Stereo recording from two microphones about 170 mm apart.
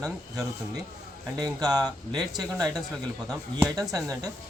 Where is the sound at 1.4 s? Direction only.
25° right (ahead or behind).